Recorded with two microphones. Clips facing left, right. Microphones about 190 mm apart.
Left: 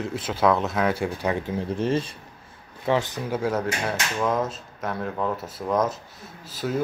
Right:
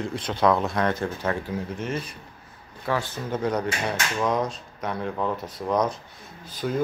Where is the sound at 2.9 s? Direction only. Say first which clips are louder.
Left 3 dB; 20° left (ahead or behind).